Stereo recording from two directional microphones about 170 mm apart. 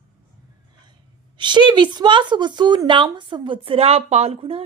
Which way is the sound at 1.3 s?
25° right (ahead or behind).